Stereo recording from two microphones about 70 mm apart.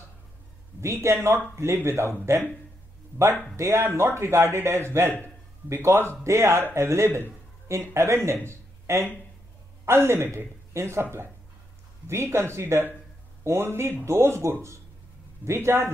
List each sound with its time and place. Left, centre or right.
1.0 s speech: right
3.5 s speech: right
8.5 s a sound: right
9.8 s speech: right